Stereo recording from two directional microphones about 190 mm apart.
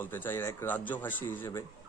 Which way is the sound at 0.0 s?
10° left (ahead or behind).